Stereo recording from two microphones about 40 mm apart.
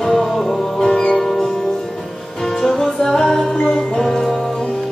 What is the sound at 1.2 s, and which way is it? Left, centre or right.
Music, centre.